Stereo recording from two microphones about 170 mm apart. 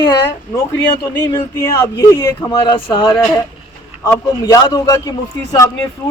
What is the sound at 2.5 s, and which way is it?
Speech, 30° left (ahead or behind).